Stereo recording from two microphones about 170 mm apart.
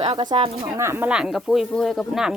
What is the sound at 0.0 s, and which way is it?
Speech, 25° right (ahead or behind).